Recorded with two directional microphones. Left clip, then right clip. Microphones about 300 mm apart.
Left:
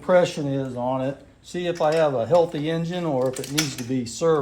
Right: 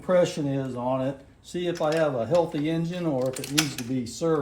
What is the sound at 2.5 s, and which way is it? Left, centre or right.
Speech, centre.